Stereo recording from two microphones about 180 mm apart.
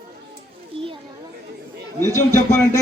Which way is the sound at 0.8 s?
30° right (ahead or behind).